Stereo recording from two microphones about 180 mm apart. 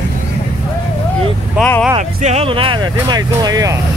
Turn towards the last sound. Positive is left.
turn(degrees=-20)  # may be behind; listen again after turning